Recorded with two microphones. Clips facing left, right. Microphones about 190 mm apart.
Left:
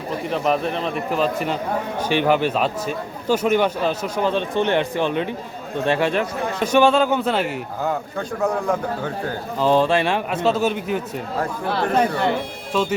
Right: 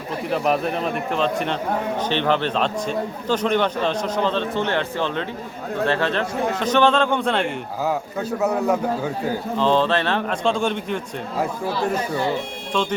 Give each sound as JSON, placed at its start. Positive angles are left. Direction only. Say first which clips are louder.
{"t": 0.3, "sound": "a man's voice", "louder": "even", "side_deg": 0}
{"t": 8.4, "sound": "speech", "louder": "right 1 dB", "side_deg": -5}
{"t": 9.6, "sound": "a man's voice", "louder": "left 2 dB", "side_deg": 10}
{"t": 11.6, "sound": "speech", "louder": "left 3 dB", "side_deg": 70}